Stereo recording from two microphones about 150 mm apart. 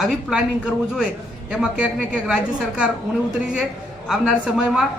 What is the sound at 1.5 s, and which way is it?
A woman's voice, 5° right (ahead or behind).